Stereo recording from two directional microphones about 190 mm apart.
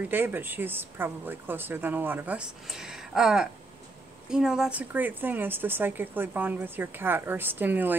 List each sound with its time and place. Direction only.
0.1 s a woman's voice: 10° right (ahead or behind)